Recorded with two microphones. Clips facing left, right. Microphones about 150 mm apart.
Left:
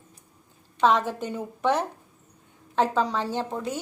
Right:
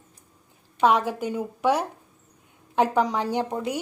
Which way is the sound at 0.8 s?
10° right (ahead or behind).